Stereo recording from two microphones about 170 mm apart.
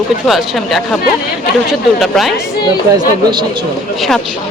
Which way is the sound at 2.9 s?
25° right (ahead or behind).